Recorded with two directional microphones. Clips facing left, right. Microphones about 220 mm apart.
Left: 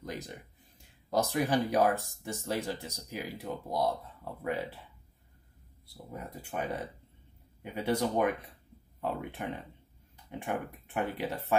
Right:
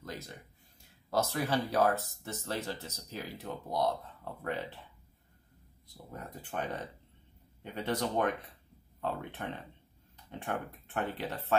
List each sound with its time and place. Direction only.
0.0 s a sound: 15° left (ahead or behind)
0.8 s speech: 15° left (ahead or behind)
5.9 s speech: 10° left (ahead or behind)